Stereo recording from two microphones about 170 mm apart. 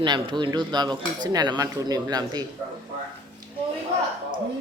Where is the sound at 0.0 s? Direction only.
25° right (ahead or behind).